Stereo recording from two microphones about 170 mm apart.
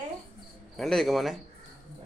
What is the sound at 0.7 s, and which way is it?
Speech, centre (ahead or behind).